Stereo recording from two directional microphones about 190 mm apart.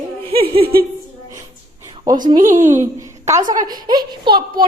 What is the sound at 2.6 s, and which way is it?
A woman's voice, 15° right (ahead or behind).